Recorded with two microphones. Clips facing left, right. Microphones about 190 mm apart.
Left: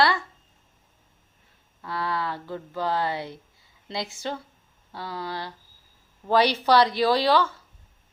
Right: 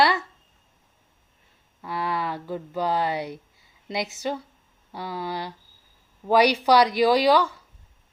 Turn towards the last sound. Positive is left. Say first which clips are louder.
# right 2 dB
turn(degrees=-15)  # may be behind; listen again after turning